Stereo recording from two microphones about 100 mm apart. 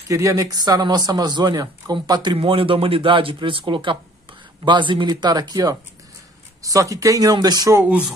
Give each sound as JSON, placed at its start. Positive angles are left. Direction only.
{"t": 0.1, "sound": "speech", "side_deg": -30}
{"t": 2.3, "sound": "speech", "side_deg": -65}